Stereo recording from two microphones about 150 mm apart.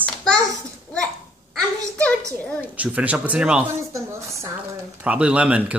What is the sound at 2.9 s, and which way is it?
Speech, 10° right (ahead or behind).